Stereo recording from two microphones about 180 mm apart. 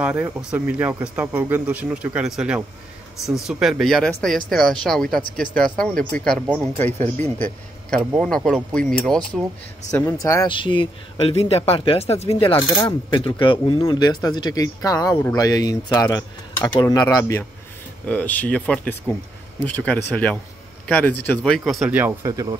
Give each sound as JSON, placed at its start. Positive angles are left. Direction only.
{"t": 0.0, "sound": "speech", "side_deg": -10}
{"t": 8.0, "sound": "speech", "side_deg": -5}
{"t": 8.3, "sound": "speech", "side_deg": 5}
{"t": 9.8, "sound": "a man's voice", "side_deg": 15}